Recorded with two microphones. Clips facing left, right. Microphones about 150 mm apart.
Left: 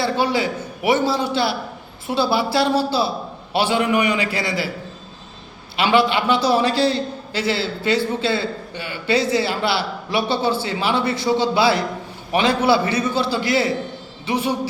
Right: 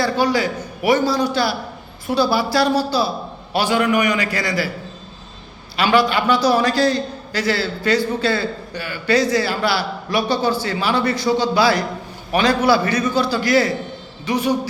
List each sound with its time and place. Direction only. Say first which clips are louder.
0.0 s a man's voice: right 2 dB; 25° left (ahead or behind)
5.7 s a man's voice: right 1 dB; 25° left (ahead or behind)